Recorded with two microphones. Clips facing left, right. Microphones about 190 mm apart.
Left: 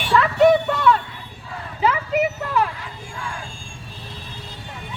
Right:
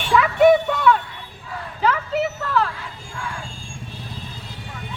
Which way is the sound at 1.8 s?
10° left (ahead or behind).